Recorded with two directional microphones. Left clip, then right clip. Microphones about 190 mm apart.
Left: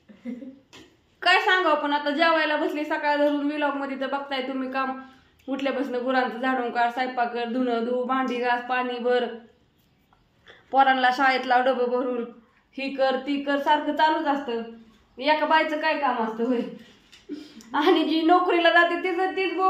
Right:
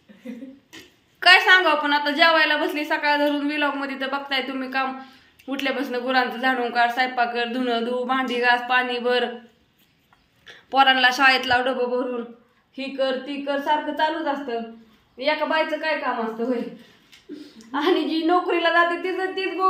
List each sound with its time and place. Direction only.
1.2 s a woman's voice: centre (ahead or behind)
10.4 s a woman's voice: 5° left (ahead or behind)
17.3 s a woman's voice: 15° left (ahead or behind)